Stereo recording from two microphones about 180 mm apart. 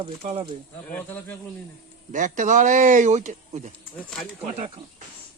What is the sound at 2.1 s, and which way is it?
Speech, 45° right (ahead or behind).